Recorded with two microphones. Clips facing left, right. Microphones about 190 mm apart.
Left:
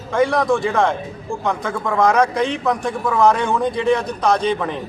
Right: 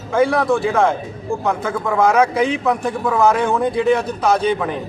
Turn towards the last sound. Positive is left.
turn(degrees=-5)  # may be behind; listen again after turning